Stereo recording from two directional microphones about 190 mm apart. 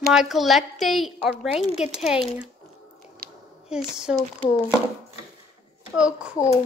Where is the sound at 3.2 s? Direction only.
55° right (ahead or behind).